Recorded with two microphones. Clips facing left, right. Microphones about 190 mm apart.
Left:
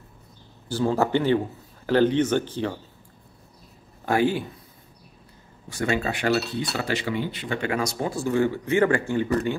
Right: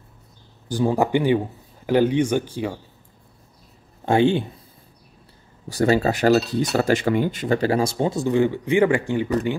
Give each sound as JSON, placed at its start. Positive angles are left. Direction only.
{"t": 0.7, "sound": "speech", "side_deg": -15}
{"t": 4.0, "sound": "speech", "side_deg": -25}
{"t": 5.7, "sound": "speech", "side_deg": -35}